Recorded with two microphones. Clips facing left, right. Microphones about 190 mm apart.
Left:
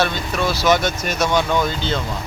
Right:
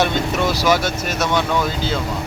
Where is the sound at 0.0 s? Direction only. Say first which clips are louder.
Right 2 dB; 20° right (ahead or behind); by 2.0 s 5° right (ahead or behind).